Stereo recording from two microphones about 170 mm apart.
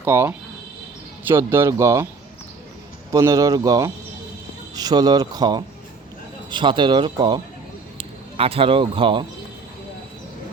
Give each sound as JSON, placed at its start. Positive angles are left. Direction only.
{"t": 0.0, "sound": "speech", "side_deg": -15}
{"t": 3.1, "sound": "speech", "side_deg": -15}